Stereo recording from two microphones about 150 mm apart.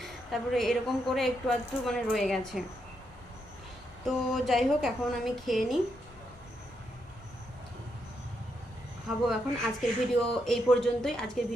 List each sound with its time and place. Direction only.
0.0 s a woman's voice: centre (ahead or behind)
4.0 s a woman's voice: centre (ahead or behind)
9.0 s a woman's voice: centre (ahead or behind)